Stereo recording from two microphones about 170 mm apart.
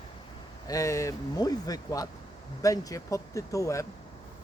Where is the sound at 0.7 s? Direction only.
20° left (ahead or behind).